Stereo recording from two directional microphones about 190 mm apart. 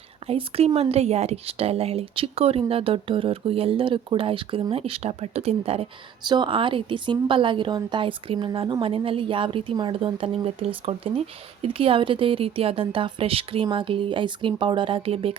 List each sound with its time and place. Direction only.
0.3 s speech: 30° right (ahead or behind)